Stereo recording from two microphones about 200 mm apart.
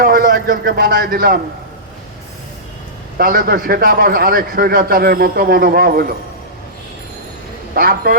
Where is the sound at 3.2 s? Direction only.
45° right (ahead or behind).